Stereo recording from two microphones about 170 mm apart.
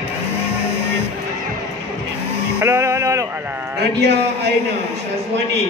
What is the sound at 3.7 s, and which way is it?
Speech, 75° right (ahead or behind).